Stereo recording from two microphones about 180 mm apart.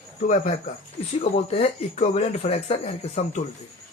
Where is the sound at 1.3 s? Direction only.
35° left (ahead or behind).